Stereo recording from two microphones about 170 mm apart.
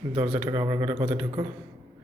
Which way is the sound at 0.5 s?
20° right (ahead or behind).